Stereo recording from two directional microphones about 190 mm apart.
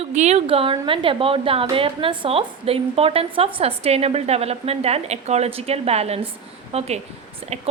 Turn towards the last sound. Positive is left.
turn(degrees=-35)  # may be behind; listen again after turning